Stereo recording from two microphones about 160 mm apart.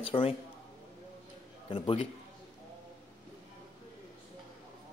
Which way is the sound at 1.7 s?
35° left (ahead or behind).